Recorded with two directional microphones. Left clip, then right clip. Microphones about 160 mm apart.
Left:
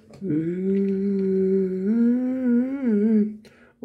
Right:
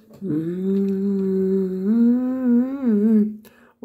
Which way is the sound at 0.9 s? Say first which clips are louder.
Right 1 dB; 35° left (ahead or behind).